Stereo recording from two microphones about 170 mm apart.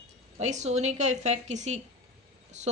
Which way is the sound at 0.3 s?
45° right (ahead or behind).